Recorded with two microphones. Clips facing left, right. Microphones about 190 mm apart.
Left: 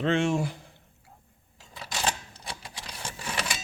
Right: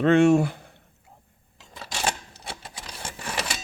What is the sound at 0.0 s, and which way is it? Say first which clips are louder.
Speech: right 8 dB; 60° right (ahead or behind).